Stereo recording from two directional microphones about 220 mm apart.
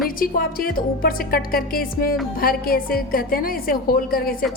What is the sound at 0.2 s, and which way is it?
A woman's voice, 40° left (ahead or behind).